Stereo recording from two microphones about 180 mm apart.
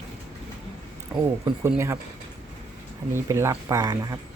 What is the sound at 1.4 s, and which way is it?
Speech, 15° right (ahead or behind).